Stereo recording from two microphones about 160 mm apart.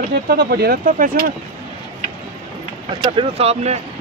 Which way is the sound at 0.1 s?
85° right.